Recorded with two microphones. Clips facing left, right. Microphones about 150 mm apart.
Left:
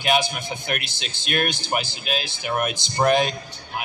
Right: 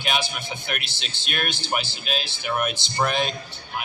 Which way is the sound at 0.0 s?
45° left (ahead or behind).